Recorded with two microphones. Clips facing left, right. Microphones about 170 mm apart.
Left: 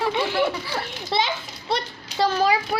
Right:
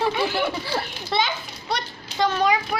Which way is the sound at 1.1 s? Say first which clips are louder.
Even; 30° left (ahead or behind).